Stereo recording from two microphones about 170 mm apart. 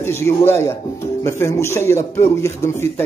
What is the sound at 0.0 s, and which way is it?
Speech, 15° left (ahead or behind).